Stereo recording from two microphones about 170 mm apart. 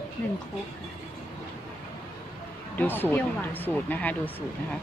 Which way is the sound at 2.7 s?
10° left (ahead or behind).